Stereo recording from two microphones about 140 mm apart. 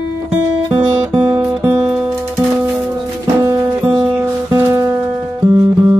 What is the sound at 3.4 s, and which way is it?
Music, 25° right (ahead or behind).